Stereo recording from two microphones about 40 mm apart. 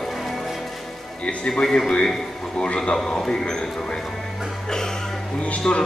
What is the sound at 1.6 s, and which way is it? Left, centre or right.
Speech, centre.